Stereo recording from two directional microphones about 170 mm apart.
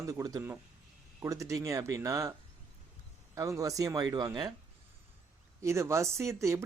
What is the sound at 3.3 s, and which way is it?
Speech, 20° right (ahead or behind).